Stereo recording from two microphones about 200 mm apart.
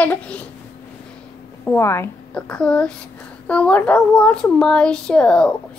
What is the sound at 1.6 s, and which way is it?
A child's voice, 10° left (ahead or behind).